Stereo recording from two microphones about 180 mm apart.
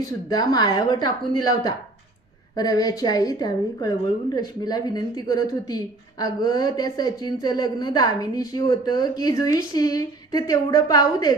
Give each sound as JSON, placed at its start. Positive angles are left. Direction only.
{"t": 0.3, "sound": "a woman's voice", "side_deg": 20}